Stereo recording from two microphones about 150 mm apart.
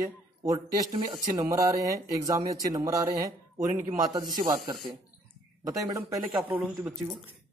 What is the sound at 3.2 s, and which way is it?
Speech, 60° right (ahead or behind).